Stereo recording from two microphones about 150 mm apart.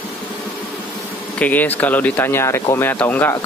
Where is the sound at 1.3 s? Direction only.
10° left (ahead or behind).